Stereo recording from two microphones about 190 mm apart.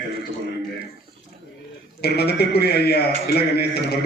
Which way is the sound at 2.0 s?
55° left (ahead or behind).